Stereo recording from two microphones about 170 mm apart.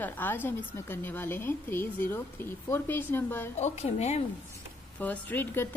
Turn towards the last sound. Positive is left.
turn(degrees=10)  # may be behind; listen again after turning